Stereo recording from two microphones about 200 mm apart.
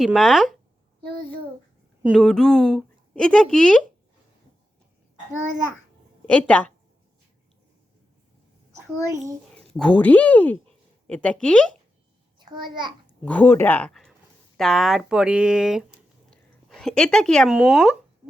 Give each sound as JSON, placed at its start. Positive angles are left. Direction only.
{"t": 0.0, "sound": "a woman's voice", "side_deg": 0}
{"t": 1.0, "sound": "a sound", "side_deg": -25}
{"t": 2.0, "sound": "a woman's voice", "side_deg": 0}
{"t": 6.3, "sound": "speech", "side_deg": 5}
{"t": 9.6, "sound": "a woman's voice", "side_deg": 5}
{"t": 12.4, "sound": "a child's voice", "side_deg": -20}
{"t": 13.2, "sound": "a woman's voice", "side_deg": 10}